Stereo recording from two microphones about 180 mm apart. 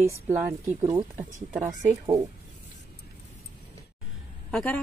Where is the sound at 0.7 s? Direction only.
20° right (ahead or behind).